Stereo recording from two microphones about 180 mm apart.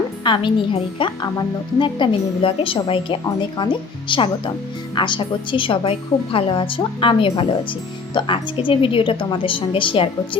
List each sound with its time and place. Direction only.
0.3 s speech: 30° left (ahead or behind)